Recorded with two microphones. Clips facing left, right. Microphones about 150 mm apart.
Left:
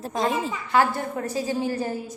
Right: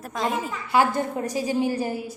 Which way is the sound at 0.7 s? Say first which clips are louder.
Right 1 dB; 15° right (ahead or behind).